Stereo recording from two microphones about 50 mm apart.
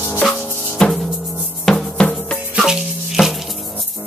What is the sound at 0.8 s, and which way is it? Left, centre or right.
Music, centre.